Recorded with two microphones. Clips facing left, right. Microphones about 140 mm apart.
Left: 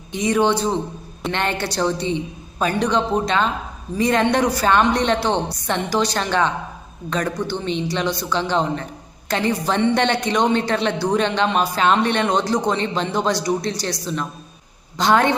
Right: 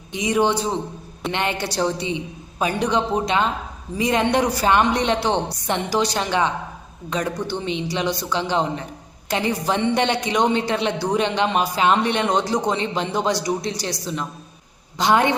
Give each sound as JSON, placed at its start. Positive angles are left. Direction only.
{"t": 0.2, "sound": "a woman's voice", "side_deg": -15}